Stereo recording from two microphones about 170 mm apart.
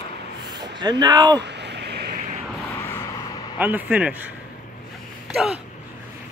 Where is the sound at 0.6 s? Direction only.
25° right (ahead or behind).